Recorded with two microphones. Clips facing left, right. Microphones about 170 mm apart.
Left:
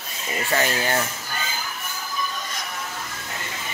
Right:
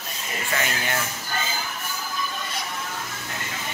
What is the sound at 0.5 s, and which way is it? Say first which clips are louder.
Speech: left 5 dB; 35° left (ahead or behind).